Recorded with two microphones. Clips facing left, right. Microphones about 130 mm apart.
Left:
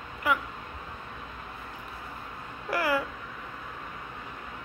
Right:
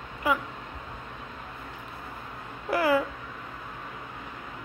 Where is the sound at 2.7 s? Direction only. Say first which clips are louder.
Right 4 dB; 20° right (ahead or behind).